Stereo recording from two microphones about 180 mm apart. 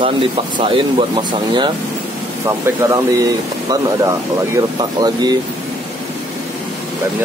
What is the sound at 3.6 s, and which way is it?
Speech, 20° right (ahead or behind).